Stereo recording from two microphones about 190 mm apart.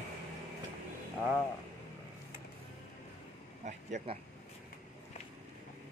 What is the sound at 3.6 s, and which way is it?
Speech, 40° right (ahead or behind).